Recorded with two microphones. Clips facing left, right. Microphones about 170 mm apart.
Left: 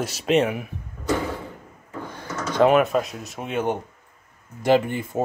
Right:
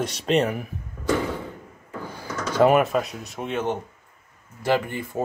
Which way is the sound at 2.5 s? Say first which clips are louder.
Left 1 dB; 5° right (ahead or behind).